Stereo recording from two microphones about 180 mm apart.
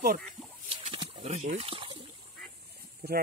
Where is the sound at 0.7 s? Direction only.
30° right (ahead or behind).